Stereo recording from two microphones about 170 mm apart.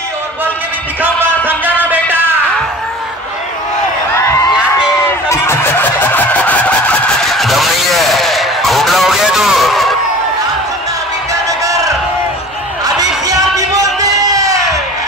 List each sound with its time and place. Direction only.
1.0 s music: 10° right (ahead or behind)
5.3 s vehicle: 15° left (ahead or behind)
12.8 s a sound: 20° right (ahead or behind)